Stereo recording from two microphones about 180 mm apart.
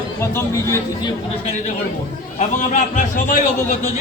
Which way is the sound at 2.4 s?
45° left (ahead or behind).